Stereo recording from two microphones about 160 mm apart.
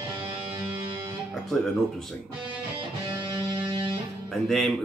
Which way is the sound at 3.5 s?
25° right (ahead or behind).